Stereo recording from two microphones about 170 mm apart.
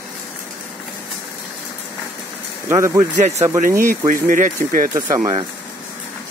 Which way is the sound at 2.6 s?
15° right (ahead or behind).